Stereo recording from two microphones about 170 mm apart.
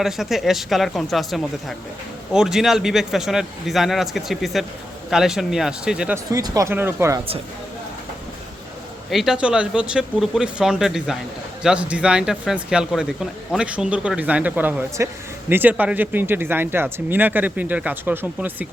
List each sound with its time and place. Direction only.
0.0 s a man's voice: centre (ahead or behind)
6.3 s speech: 20° right (ahead or behind)
9.0 s a man's voice: centre (ahead or behind)